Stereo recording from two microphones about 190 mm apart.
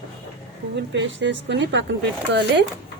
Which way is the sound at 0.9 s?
70° right (ahead or behind).